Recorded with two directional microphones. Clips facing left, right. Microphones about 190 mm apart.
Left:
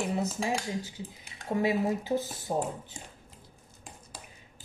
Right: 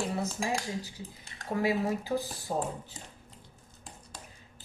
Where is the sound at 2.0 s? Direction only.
20° left (ahead or behind).